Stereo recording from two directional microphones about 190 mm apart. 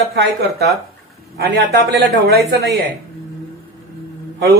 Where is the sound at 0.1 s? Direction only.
60° right (ahead or behind).